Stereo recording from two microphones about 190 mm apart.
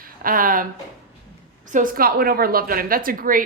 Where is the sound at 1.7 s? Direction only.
45° right (ahead or behind).